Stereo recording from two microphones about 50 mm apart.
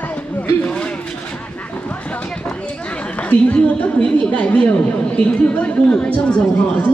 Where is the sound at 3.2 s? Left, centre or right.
Left.